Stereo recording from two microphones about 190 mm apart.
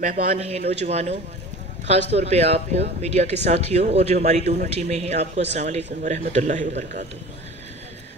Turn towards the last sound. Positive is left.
turn(degrees=-40)  # may be behind; listen again after turning